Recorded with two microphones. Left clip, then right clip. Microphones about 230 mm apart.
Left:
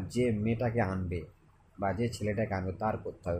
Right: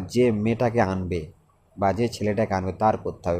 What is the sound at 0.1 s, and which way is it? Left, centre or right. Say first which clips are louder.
Speech: right 9 dB; right.